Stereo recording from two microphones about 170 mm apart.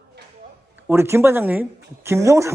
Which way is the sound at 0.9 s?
15° right (ahead or behind).